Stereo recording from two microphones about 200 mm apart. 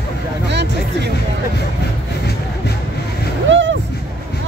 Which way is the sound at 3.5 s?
70° right (ahead or behind).